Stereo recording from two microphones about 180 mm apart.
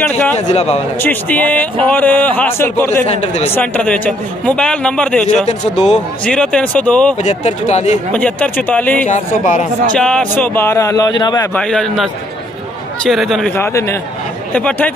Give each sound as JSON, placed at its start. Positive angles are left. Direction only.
{"t": 0.5, "sound": "a man's voice", "side_deg": 40}
{"t": 1.0, "sound": "a man's voice", "side_deg": 10}
{"t": 3.1, "sound": "a man's voice", "side_deg": 35}
{"t": 3.5, "sound": "a man's voice", "side_deg": 5}
{"t": 5.5, "sound": "a man's voice", "side_deg": 40}
{"t": 6.2, "sound": "a man's voice", "side_deg": 5}
{"t": 7.2, "sound": "a man's voice", "side_deg": 40}
{"t": 8.1, "sound": "a man's voice", "side_deg": 5}
{"t": 9.0, "sound": "a man's voice", "side_deg": 40}
{"t": 9.9, "sound": "a man's voice", "side_deg": 5}
{"t": 11.5, "sound": "a man's voice", "side_deg": 5}
{"t": 13.6, "sound": "a man's voice", "side_deg": 15}